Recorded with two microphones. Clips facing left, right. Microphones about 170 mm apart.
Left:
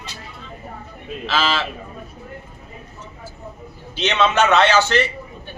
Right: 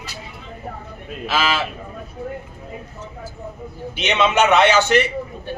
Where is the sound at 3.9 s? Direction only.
15° right (ahead or behind).